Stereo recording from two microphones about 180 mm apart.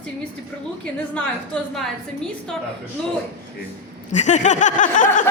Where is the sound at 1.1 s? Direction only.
5° left (ahead or behind).